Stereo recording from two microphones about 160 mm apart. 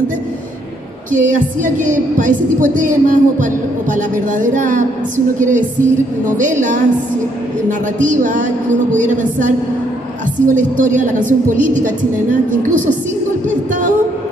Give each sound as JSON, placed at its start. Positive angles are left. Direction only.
{"t": 1.1, "sound": "a woman's voice", "side_deg": -55}
{"t": 8.0, "sound": "a woman's voice", "side_deg": -55}